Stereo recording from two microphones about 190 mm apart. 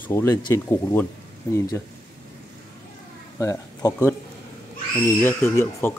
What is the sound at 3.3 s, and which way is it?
Speech, 15° left (ahead or behind).